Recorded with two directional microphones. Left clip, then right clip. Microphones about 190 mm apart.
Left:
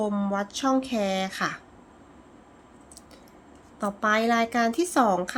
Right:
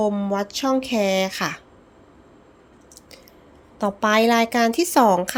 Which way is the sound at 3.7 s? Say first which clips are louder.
Right 5 dB; 25° right (ahead or behind).